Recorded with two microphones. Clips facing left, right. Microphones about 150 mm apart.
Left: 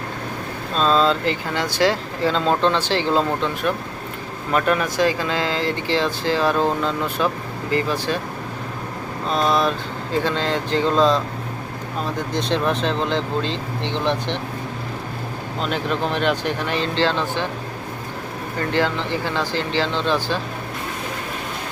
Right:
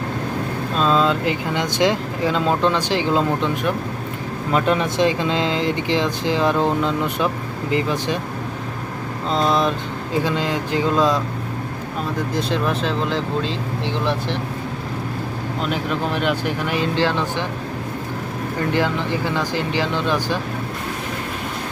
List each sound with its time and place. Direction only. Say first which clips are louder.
0.8 s speech: even; 10° right (ahead or behind)
9.3 s speech: right 1 dB; 20° right (ahead or behind)
12.3 s speech: left 2 dB; 5° right (ahead or behind)
15.7 s speech: left 1 dB; 5° right (ahead or behind)
18.7 s speech: even; 15° right (ahead or behind)